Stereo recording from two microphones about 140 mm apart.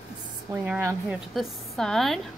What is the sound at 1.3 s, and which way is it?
Speech, centre (ahead or behind).